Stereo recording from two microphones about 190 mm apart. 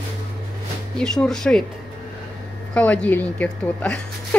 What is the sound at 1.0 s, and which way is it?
Speech, 5° left (ahead or behind).